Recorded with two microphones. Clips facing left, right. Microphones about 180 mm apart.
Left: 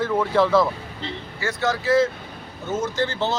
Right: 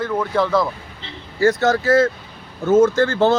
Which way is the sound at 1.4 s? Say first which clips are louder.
Right 8 dB; 40° right (ahead or behind).